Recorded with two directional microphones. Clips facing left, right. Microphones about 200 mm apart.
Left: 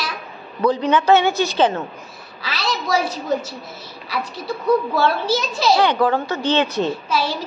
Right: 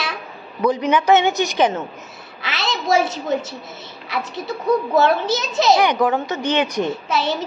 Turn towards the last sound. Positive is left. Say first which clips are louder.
# right 1 dB
turn(degrees=-25)  # may be behind; listen again after turning